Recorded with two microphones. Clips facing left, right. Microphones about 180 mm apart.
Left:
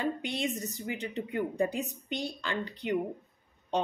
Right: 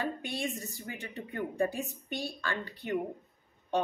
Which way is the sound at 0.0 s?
20° left (ahead or behind).